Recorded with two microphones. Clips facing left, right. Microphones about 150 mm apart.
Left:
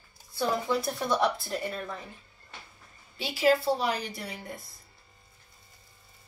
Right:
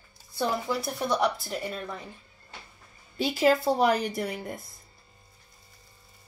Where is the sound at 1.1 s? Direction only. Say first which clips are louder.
Right 1 dB; 20° right (ahead or behind).